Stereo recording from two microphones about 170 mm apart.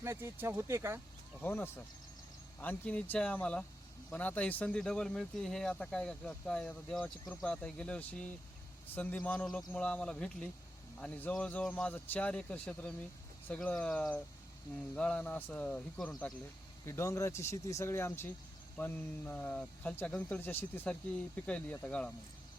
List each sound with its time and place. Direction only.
0.0 s speech: 15° right (ahead or behind)
1.4 s speech: 15° left (ahead or behind)